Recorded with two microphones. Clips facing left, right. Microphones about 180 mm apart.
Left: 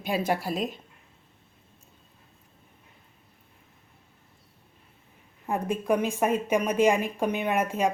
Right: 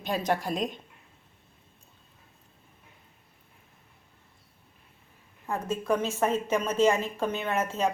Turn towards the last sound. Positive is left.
turn(degrees=10)  # may be behind; listen again after turning